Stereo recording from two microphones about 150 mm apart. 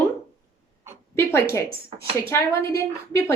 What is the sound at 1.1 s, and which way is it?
A woman's voice, 15° left (ahead or behind).